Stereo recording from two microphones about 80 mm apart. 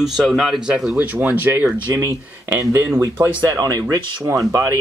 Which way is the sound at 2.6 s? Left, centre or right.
Right.